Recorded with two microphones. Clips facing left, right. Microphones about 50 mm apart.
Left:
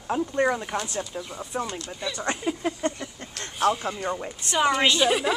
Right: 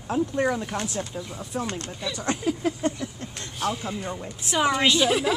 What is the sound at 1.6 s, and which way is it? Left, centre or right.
Speech, right.